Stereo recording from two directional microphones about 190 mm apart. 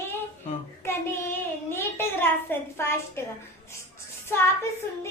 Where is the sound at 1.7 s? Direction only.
10° left (ahead or behind).